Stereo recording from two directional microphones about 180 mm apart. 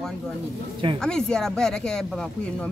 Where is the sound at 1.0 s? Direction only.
5° left (ahead or behind).